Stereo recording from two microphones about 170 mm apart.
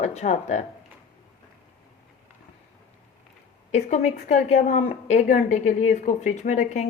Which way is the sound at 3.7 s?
45° left (ahead or behind).